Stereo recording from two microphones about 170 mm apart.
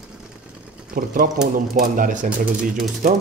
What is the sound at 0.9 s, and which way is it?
Speech, 55° right (ahead or behind).